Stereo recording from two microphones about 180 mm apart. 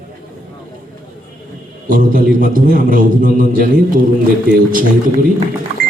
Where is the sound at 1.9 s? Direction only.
50° right (ahead or behind).